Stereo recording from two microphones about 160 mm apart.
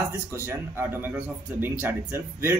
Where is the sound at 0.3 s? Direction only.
15° right (ahead or behind).